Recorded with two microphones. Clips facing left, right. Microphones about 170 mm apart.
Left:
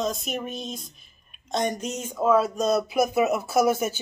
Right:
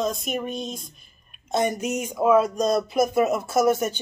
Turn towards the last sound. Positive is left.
turn(degrees=5)  # may be behind; listen again after turning